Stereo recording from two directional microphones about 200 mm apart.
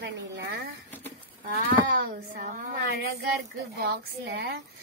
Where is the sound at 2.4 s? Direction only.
35° right (ahead or behind).